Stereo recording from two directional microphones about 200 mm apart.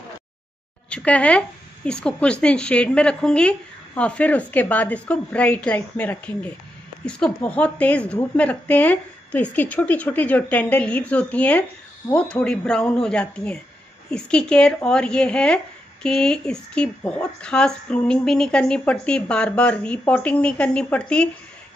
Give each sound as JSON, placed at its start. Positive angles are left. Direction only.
{"t": 0.8, "sound": "a woman's voice", "side_deg": 5}